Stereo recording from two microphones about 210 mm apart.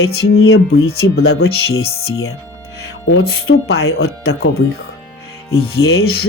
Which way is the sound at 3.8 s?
90° left.